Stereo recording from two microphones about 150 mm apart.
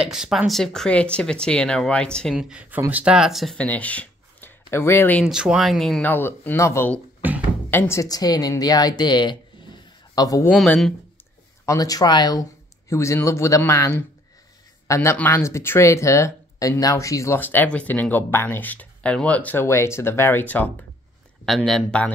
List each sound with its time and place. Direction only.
0.0 s speech: 5° right (ahead or behind)
2.3 s speech: 5° right (ahead or behind); by 5.2 s 15° left (ahead or behind)
5.2 s speech: 5° right (ahead or behind); by 7.0 s 15° left (ahead or behind)
7.2 s a sound: 10° right (ahead or behind)
7.7 s a woman's voice: 20° left (ahead or behind)
10.5 s speech: 5° left (ahead or behind)
11.6 s a woman's voice: 20° left (ahead or behind); by 22.1 s 5° left (ahead or behind)